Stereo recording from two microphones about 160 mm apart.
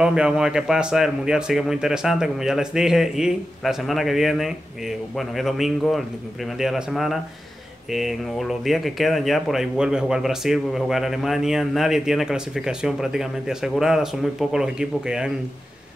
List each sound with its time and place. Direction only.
0.0 s speech: 5° right (ahead or behind)